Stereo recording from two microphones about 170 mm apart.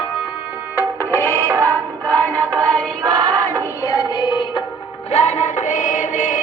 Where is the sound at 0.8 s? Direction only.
15° left (ahead or behind).